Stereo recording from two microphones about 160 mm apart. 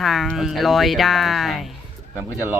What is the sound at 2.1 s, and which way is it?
Speech, 15° left (ahead or behind).